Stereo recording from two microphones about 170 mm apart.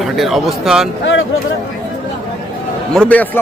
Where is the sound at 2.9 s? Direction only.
10° left (ahead or behind).